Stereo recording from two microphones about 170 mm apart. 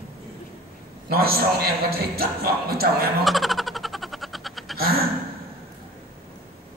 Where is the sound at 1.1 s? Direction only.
65° right (ahead or behind).